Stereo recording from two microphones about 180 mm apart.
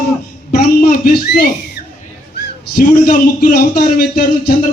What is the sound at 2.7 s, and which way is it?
A man's voice, 55° left (ahead or behind).